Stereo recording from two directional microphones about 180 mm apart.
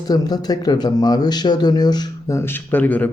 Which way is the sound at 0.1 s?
20° left (ahead or behind).